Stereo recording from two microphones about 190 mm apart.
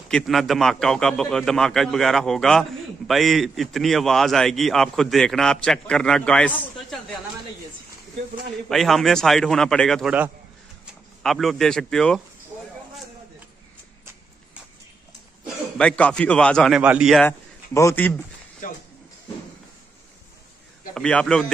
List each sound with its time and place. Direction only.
0.1 s a man's voice: centre (ahead or behind)
8.6 s a man's voice: centre (ahead or behind)
15.4 s a man's voice: 5° left (ahead or behind)
17.2 s a man's voice: 15° left (ahead or behind)
18.6 s a sound: 45° left (ahead or behind)
20.9 s a man's voice: 5° left (ahead or behind)